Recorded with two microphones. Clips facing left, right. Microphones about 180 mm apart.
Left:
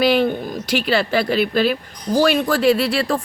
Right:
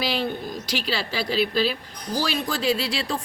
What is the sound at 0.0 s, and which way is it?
Speech, 55° left (ahead or behind).